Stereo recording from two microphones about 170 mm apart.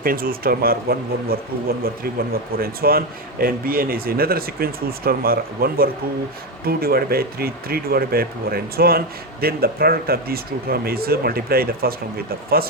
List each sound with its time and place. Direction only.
0.0 s speech: 60° right (ahead or behind)